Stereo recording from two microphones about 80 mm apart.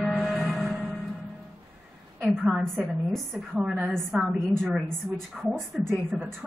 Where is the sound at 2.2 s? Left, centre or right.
Centre.